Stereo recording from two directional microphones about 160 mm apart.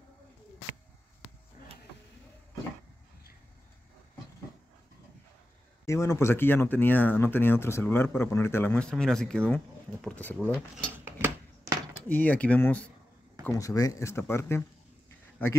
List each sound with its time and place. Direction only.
5.9 s speech: 20° left (ahead or behind)
11.1 s a sound: 10° right (ahead or behind)
12.1 s speech: 10° left (ahead or behind)